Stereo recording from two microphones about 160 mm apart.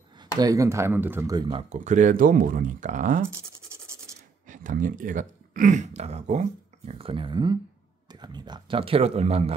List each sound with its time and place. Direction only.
0.4 s speech: 20° right (ahead or behind)
1.3 s speech: 30° right (ahead or behind); by 3.2 s 50° right (ahead or behind)
3.3 s scratch: 15° right (ahead or behind)
4.5 s speech: 55° right (ahead or behind)